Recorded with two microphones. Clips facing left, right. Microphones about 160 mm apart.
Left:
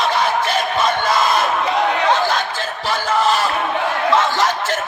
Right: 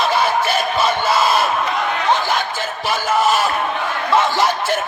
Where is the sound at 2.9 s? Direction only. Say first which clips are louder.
Right 1 dB; 15° right (ahead or behind).